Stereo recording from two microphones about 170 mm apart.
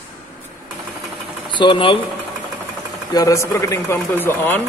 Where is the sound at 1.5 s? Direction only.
30° left (ahead or behind).